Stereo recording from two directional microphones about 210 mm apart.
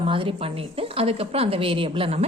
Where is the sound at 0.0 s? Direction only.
25° right (ahead or behind).